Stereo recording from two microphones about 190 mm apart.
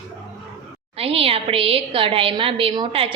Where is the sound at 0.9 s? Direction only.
30° right (ahead or behind).